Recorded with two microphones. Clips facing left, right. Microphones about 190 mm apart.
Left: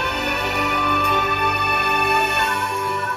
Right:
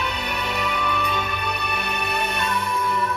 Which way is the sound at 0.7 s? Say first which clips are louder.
Left 3 dB; 65° left (ahead or behind).